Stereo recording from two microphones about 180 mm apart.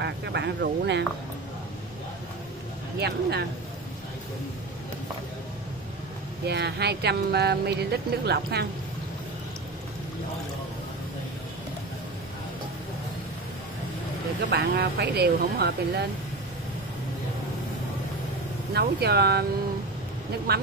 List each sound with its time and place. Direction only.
0.0 s speech: 75° right (ahead or behind)
3.0 s speech: 65° right (ahead or behind)
6.4 s speech: 65° right (ahead or behind)
14.5 s speech: 65° right (ahead or behind)
18.7 s speech: 65° right (ahead or behind)